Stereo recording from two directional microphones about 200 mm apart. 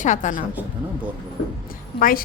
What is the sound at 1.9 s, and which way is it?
Speech, 45° left (ahead or behind).